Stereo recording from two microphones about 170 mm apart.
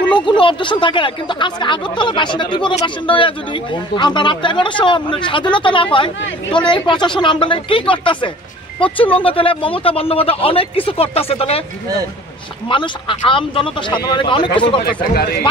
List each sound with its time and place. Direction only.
0.2 s speech: 30° left (ahead or behind)
12.6 s speech: 30° left (ahead or behind)
15.1 s speech: 65° left (ahead or behind)